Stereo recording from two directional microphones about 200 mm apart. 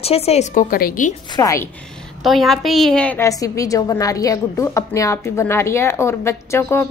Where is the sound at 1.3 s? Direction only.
15° left (ahead or behind).